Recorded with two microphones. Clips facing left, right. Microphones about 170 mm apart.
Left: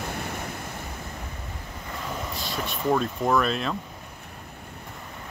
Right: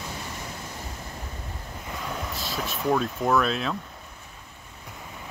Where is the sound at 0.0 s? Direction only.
60° left (ahead or behind).